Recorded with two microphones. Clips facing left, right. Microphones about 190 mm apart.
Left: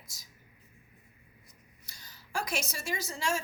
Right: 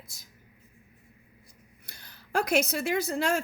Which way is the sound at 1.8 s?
60° right (ahead or behind).